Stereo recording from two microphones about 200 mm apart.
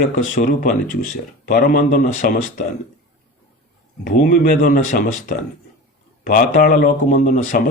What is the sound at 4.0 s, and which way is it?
Speech, 45° left (ahead or behind).